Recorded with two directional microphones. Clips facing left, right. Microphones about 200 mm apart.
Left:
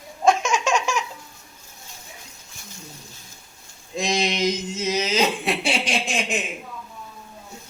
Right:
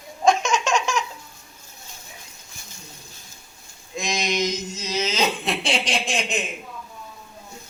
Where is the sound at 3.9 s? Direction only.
30° left (ahead or behind).